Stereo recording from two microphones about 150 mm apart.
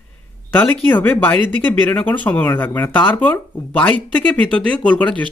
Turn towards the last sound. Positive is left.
turn(degrees=10)  # may be behind; listen again after turning